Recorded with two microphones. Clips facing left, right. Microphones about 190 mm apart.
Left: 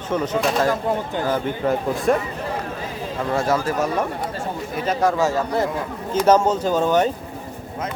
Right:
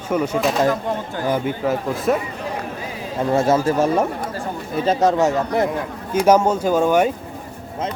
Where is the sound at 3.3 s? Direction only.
25° right (ahead or behind).